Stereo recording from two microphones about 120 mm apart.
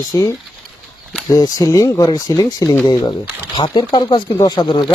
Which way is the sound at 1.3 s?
30° left (ahead or behind).